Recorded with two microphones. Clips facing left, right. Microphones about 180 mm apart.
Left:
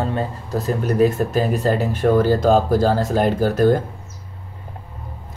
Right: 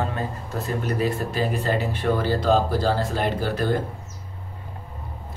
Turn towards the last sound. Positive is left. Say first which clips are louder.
# left 8 dB
turn(degrees=45)  # may be behind; listen again after turning